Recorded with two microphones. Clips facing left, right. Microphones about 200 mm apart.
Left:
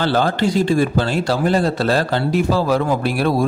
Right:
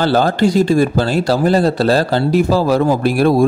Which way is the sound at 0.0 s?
40° right (ahead or behind).